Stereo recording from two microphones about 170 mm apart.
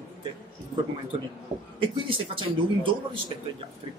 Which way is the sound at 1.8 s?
30° right (ahead or behind).